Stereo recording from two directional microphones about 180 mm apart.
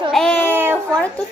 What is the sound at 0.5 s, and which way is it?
Speech, 10° right (ahead or behind).